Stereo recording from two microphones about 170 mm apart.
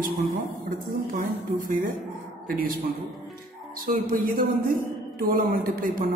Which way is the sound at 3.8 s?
55° right (ahead or behind).